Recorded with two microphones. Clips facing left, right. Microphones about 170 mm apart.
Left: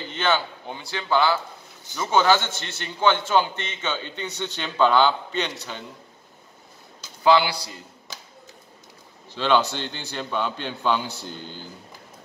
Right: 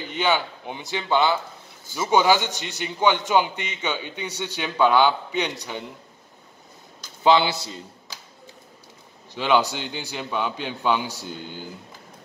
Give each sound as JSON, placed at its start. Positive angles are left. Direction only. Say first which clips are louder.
{"t": 0.1, "sound": "a man's voice", "louder": "right 1 dB", "side_deg": -15}
{"t": 7.2, "sound": "a man's voice", "louder": "even", "side_deg": -20}
{"t": 9.3, "sound": "a man's voice", "louder": "even", "side_deg": -15}